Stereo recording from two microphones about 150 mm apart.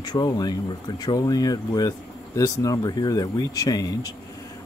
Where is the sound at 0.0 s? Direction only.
25° left (ahead or behind).